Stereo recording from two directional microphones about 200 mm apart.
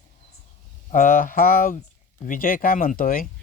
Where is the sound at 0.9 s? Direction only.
40° left (ahead or behind).